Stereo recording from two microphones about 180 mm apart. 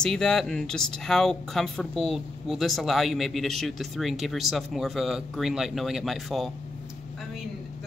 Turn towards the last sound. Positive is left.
turn(degrees=0)  # may be behind; listen again after turning